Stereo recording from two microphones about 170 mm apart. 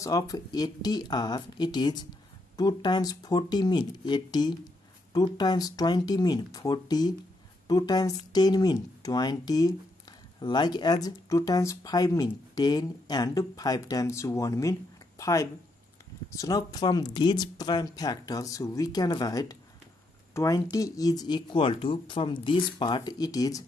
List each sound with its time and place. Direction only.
0.0 s speech: 20° left (ahead or behind)